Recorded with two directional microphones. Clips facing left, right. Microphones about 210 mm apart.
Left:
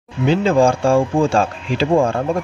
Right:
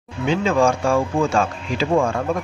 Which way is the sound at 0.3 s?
35° left (ahead or behind).